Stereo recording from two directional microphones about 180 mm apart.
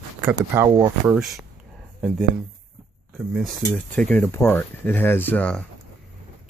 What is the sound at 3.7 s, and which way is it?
Speech, 5° left (ahead or behind).